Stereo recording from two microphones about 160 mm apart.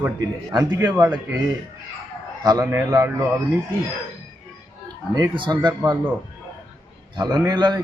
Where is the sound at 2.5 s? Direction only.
20° right (ahead or behind).